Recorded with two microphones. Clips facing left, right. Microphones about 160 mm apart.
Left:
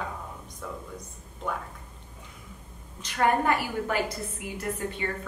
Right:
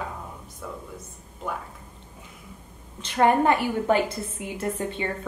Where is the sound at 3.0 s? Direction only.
25° right (ahead or behind).